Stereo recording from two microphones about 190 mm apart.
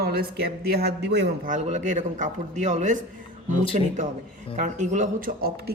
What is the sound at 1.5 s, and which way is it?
Speech, 35° right (ahead or behind).